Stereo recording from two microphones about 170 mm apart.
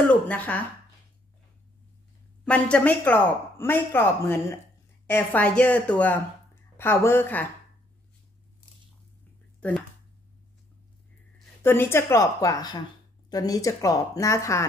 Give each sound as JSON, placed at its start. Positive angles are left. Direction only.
{"t": 0.1, "sound": "speech", "side_deg": 10}
{"t": 2.4, "sound": "speech", "side_deg": 5}
{"t": 9.6, "sound": "a sound", "side_deg": 10}
{"t": 11.6, "sound": "a woman's voice", "side_deg": 15}